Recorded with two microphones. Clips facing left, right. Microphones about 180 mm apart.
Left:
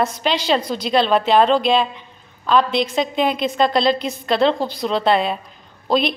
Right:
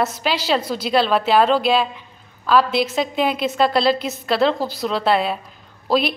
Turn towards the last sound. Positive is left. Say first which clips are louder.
# even
turn(degrees=-5)  # may be behind; listen again after turning